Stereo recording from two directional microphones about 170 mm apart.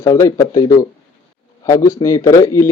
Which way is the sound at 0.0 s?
15° left (ahead or behind).